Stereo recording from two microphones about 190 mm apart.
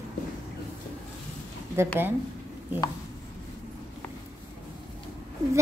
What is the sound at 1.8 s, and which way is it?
Speech, 15° right (ahead or behind).